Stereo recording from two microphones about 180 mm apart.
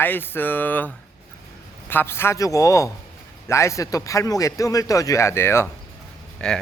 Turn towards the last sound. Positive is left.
turn(degrees=5)  # may be behind; listen again after turning